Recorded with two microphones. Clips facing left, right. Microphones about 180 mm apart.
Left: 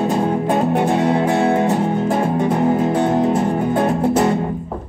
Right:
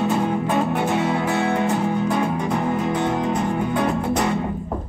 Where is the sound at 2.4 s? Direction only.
30° left (ahead or behind).